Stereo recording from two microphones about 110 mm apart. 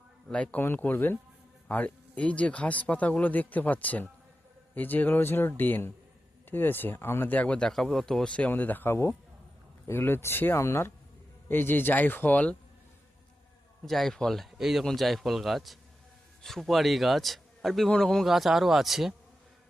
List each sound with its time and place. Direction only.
0.3 s speech: 10° left (ahead or behind)
13.8 s a man's voice: centre (ahead or behind)